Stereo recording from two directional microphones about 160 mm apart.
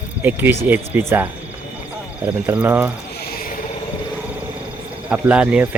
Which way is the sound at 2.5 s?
10° right (ahead or behind).